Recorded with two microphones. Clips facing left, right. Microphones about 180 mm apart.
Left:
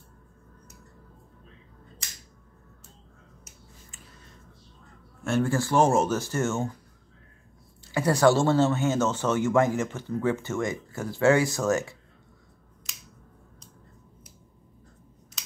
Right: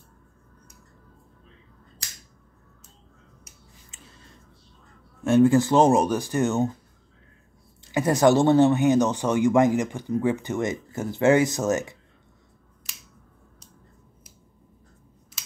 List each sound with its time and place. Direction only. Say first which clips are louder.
5.2 s speech: right 8 dB; 20° right (ahead or behind)
7.8 s speech: right 2 dB; 20° right (ahead or behind)